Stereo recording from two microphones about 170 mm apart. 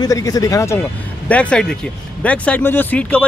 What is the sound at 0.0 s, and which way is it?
Speech, 20° left (ahead or behind).